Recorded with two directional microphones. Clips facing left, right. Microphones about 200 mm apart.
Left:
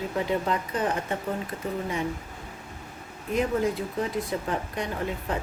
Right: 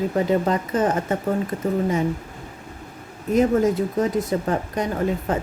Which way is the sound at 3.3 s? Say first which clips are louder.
Right 7 dB; 40° right (ahead or behind).